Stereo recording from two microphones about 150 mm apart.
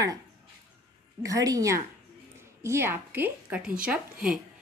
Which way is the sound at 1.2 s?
25° right (ahead or behind).